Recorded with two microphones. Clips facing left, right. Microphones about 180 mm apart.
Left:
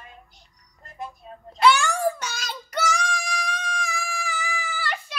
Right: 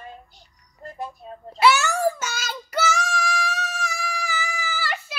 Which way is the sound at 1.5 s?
5° right (ahead or behind).